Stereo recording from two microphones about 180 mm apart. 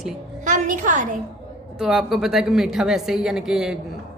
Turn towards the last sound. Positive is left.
turn(degrees=-5)  # may be behind; listen again after turning